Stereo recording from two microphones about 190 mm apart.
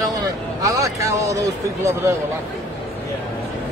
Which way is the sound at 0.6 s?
15° right (ahead or behind).